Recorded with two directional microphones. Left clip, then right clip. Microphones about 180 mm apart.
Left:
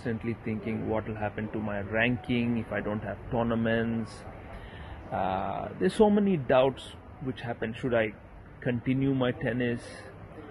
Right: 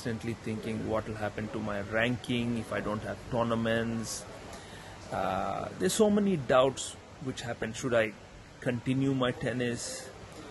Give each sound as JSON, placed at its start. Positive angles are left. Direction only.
{"t": 0.0, "sound": "speech", "side_deg": -20}